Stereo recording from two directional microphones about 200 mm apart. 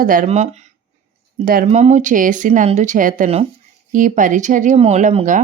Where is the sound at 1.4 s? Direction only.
45° right (ahead or behind).